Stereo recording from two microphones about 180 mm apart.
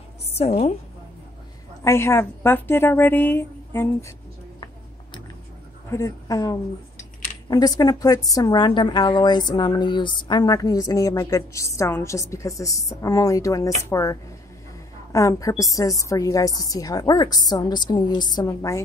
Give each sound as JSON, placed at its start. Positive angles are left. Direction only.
{"t": 0.4, "sound": "a woman's voice", "side_deg": 35}
{"t": 1.9, "sound": "a woman's voice", "side_deg": 15}
{"t": 5.9, "sound": "a woman's voice", "side_deg": 15}
{"t": 15.1, "sound": "speech", "side_deg": 20}